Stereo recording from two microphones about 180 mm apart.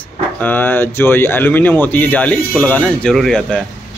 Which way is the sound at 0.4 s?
10° left (ahead or behind).